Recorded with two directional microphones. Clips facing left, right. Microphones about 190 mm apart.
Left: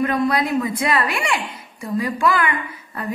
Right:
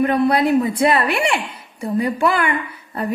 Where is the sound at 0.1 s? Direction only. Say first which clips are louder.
Right 4 dB; 30° right (ahead or behind).